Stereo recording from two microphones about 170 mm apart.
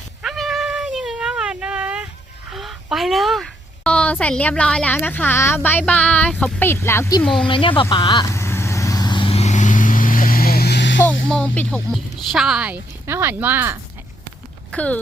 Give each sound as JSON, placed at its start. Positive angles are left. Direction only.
{"t": 0.2, "sound": "cat", "side_deg": 0}
{"t": 2.5, "sound": "a woman's voice", "side_deg": 0}
{"t": 7.4, "sound": "vehicle", "side_deg": 30}
{"t": 11.0, "sound": "music", "side_deg": 5}
{"t": 12.3, "sound": "a woman's voice", "side_deg": 0}
{"t": 14.7, "sound": "speech", "side_deg": 10}